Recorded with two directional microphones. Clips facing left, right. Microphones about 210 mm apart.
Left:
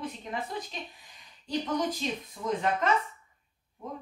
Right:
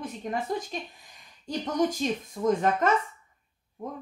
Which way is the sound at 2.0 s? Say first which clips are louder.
Right 6 dB; 45° right (ahead or behind).